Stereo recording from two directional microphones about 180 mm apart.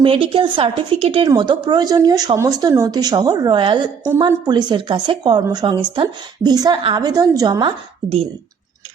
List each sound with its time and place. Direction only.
0.0 s a woman's voice: 30° right (ahead or behind)